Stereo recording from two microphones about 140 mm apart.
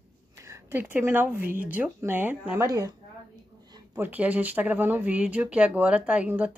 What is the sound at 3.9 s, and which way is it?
Speech, 15° right (ahead or behind).